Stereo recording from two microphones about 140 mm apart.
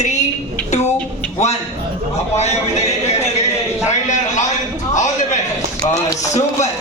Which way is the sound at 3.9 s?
60° left (ahead or behind).